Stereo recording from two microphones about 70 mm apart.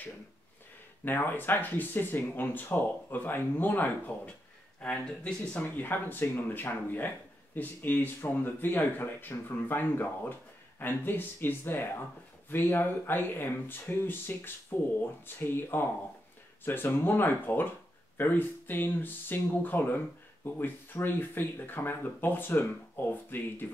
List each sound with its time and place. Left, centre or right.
1.0 s speech: left
4.7 s speech: centre
5.8 s speech: left